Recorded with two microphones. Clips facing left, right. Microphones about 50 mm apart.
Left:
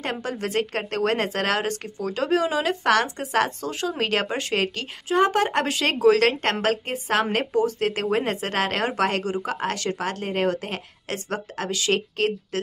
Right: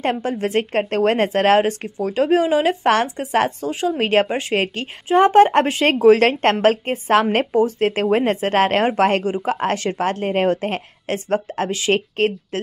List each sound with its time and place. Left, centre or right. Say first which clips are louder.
0.0 s speech: right 7 dB; right